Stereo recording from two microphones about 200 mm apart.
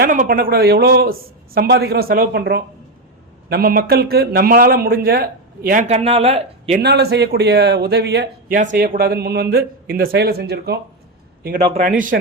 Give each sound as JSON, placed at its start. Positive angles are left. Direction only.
{"t": 0.0, "sound": "a man's voice", "side_deg": -45}
{"t": 6.8, "sound": "a man's voice", "side_deg": -55}
{"t": 11.7, "sound": "a man's voice", "side_deg": -40}